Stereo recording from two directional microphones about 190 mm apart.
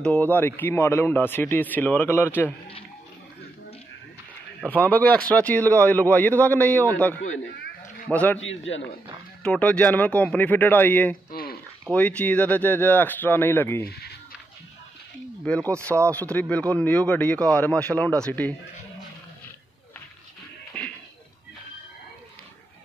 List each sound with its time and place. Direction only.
0.0 s speech: 5° left (ahead or behind)
4.6 s speech: 10° left (ahead or behind)
8.4 s a man's voice: 85° left
9.4 s speech: 5° left (ahead or behind)
13.8 s a sound: 55° left (ahead or behind)
15.4 s speech: 5° left (ahead or behind)
20.7 s music: 5° left (ahead or behind)